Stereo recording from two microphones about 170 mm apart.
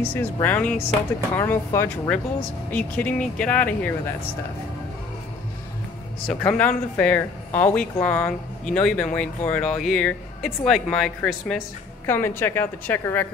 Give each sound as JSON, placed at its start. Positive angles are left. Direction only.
{"t": 0.0, "sound": "speech", "side_deg": 15}
{"t": 6.2, "sound": "speech", "side_deg": 5}
{"t": 12.1, "sound": "speech", "side_deg": 15}